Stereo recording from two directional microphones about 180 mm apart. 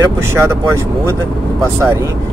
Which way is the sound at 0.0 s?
15° right (ahead or behind).